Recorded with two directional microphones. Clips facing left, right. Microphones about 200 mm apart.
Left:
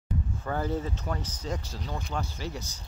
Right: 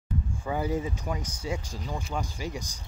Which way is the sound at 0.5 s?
10° right (ahead or behind).